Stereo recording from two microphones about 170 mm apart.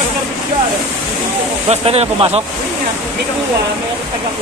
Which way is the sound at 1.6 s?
35° right (ahead or behind).